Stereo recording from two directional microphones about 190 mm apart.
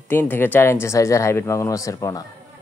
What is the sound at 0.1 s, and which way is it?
Speech, 10° left (ahead or behind).